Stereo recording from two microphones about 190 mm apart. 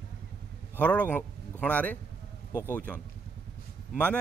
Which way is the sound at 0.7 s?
5° left (ahead or behind).